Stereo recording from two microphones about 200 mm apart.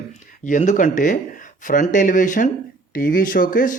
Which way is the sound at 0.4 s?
40° left (ahead or behind).